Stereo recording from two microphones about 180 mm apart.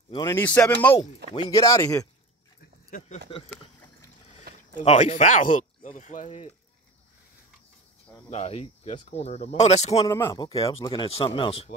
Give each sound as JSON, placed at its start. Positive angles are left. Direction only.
{"t": 0.2, "sound": "speech", "side_deg": 10}
{"t": 2.9, "sound": "speech", "side_deg": 50}
{"t": 3.4, "sound": "boat", "side_deg": 15}
{"t": 4.7, "sound": "speech", "side_deg": 40}
{"t": 8.3, "sound": "speech", "side_deg": 35}
{"t": 10.0, "sound": "a man's voice", "side_deg": 15}